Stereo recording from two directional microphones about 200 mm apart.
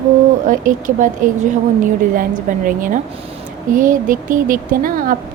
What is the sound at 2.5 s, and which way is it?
A woman's voice, 40° right (ahead or behind).